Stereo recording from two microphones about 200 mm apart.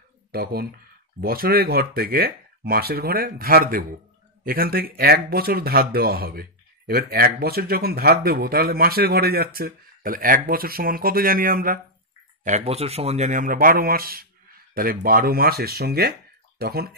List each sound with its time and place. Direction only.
0.3 s speech: 50° right (ahead or behind)
12.4 s speech: 30° right (ahead or behind); by 16.9 s 50° right (ahead or behind)